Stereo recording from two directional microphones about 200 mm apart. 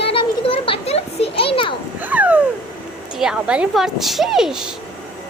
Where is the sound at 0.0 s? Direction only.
25° left (ahead or behind).